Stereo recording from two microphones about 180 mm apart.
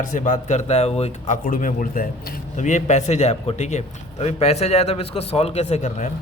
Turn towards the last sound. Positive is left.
turn(degrees=40)  # may be behind; listen again after turning